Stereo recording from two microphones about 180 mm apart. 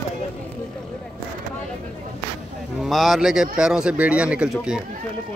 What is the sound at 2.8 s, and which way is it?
Speech, centre (ahead or behind).